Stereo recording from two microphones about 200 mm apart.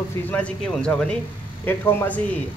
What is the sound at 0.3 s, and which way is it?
Speech, 5° left (ahead or behind).